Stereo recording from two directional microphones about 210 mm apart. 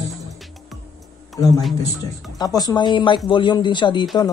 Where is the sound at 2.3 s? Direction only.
20° left (ahead or behind).